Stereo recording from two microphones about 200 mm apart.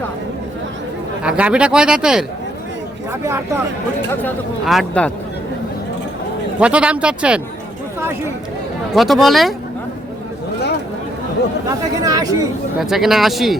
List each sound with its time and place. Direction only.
1.2 s speech: 5° right (ahead or behind)
4.1 s speech: 10° left (ahead or behind)
6.6 s speech: 5° right (ahead or behind)
8.9 s speech: centre (ahead or behind)
11.7 s speech: 20° right (ahead or behind)
12.8 s speech: centre (ahead or behind)